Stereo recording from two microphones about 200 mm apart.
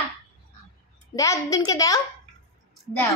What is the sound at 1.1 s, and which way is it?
A woman's voice, 15° left (ahead or behind).